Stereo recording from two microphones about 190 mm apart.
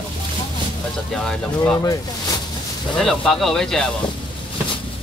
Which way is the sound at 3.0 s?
Centre (ahead or behind).